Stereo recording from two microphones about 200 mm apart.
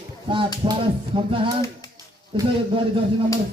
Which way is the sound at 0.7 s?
25° right (ahead or behind).